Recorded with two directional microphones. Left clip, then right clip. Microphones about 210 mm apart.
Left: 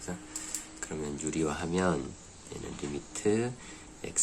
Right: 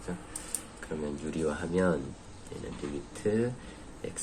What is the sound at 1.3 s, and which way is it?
Speech, 50° left (ahead or behind).